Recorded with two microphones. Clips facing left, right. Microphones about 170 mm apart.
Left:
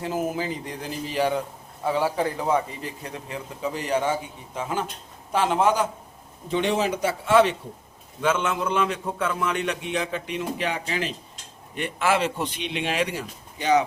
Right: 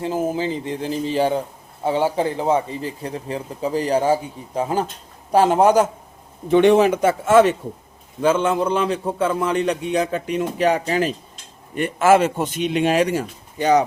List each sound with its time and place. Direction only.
0.0 s a man's voice: 30° right (ahead or behind)
6.5 s speech: 60° right (ahead or behind)
8.2 s a man's voice: 35° right (ahead or behind)